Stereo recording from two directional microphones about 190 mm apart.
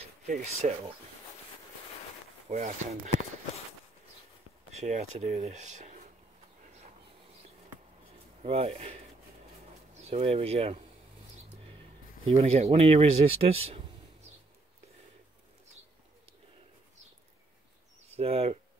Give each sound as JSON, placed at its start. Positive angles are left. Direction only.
{"t": 0.3, "sound": "speech", "side_deg": -35}
{"t": 2.5, "sound": "speech", "side_deg": -40}
{"t": 4.7, "sound": "speech", "side_deg": -35}
{"t": 8.4, "sound": "speech", "side_deg": -30}
{"t": 10.0, "sound": "speech", "side_deg": -30}
{"t": 12.3, "sound": "speech", "side_deg": -35}
{"t": 18.1, "sound": "speech", "side_deg": -30}